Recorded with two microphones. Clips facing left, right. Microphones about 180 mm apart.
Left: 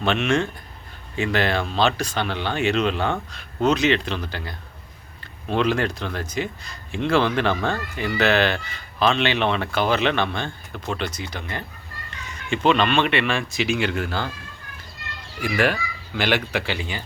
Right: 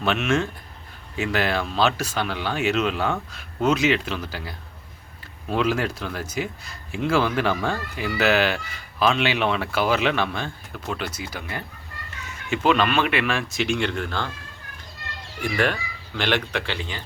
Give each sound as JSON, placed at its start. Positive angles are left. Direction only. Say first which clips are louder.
{"t": 0.0, "sound": "speech", "louder": "left 1 dB", "side_deg": -5}
{"t": 15.4, "sound": "speech", "louder": "left 2 dB", "side_deg": 5}